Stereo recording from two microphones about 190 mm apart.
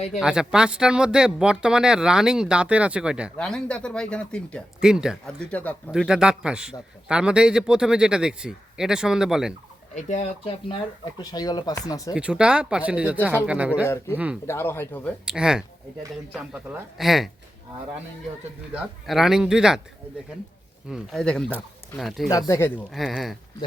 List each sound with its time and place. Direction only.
0.2 s speech: 5° right (ahead or behind)
5.5 s speech: 5° left (ahead or behind)
5.9 s speech: 5° right (ahead or behind)
9.9 s speech: 35° left (ahead or behind)
11.2 s speech: 20° left (ahead or behind)
12.1 s speech: 5° right (ahead or behind)
13.8 s speech: 15° left (ahead or behind)
15.2 s speech: 5° right (ahead or behind)
18.7 s speech: 5° right (ahead or behind)
20.9 s speech: centre (ahead or behind)
22.3 s speech: 15° left (ahead or behind)
22.9 s speech: centre (ahead or behind)